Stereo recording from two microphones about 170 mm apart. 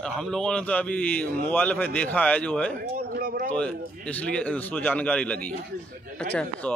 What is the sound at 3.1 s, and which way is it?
Speech, 60° right (ahead or behind).